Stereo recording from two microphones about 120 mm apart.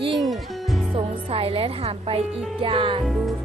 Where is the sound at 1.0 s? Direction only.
50° right (ahead or behind).